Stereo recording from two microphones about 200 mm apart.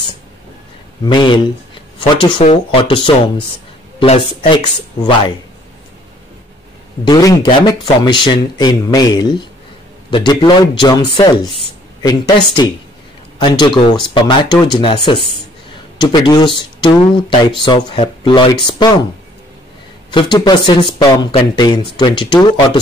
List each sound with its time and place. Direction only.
1.0 s speech: 25° left (ahead or behind)
7.1 s speech: 20° left (ahead or behind)
13.4 s speech: 20° left (ahead or behind)
20.1 s speech: 20° left (ahead or behind)